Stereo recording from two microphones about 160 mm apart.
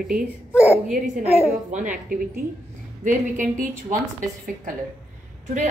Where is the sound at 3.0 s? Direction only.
55° right (ahead or behind).